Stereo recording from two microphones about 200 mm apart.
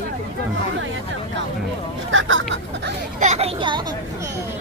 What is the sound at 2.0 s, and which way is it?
Speech, 75° right (ahead or behind).